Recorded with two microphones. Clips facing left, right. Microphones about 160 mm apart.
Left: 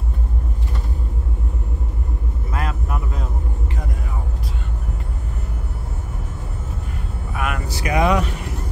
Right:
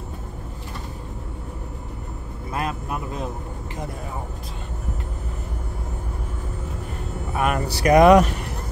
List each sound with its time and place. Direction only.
2.5 s vehicle: 20° right (ahead or behind)
7.3 s vehicle: 35° right (ahead or behind)
7.7 s speech: 40° right (ahead or behind)